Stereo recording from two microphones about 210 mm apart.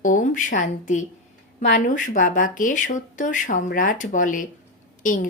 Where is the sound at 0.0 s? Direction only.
40° left (ahead or behind).